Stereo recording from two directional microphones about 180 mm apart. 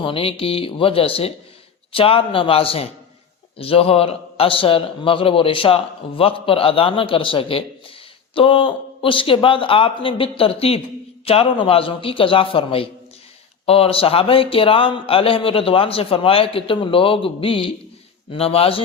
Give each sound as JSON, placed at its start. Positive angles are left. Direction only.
{"t": 0.0, "sound": "a man's voice", "side_deg": 30}